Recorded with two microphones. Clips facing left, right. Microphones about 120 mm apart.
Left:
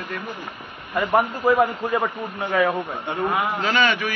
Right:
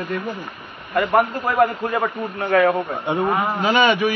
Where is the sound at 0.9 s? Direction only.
Centre (ahead or behind).